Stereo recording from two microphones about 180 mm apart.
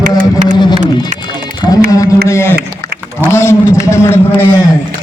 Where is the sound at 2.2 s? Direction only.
15° left (ahead or behind).